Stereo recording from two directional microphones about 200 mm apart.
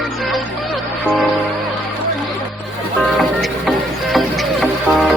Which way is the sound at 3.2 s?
Centre (ahead or behind).